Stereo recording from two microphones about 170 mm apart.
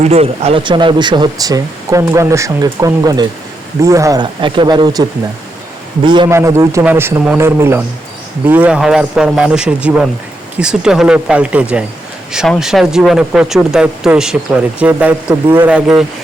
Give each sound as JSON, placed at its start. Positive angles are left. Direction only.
{"t": 0.0, "sound": "speech", "side_deg": -35}
{"t": 6.1, "sound": "speech", "side_deg": -25}
{"t": 6.3, "sound": "a man's voice", "side_deg": -15}